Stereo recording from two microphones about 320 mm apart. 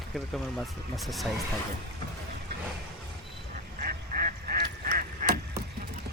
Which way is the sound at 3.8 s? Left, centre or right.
Right.